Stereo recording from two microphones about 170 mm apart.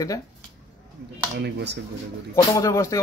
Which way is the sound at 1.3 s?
85° right.